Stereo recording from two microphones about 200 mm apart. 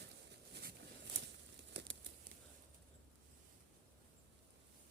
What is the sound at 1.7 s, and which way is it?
Crumpling, 60° right (ahead or behind).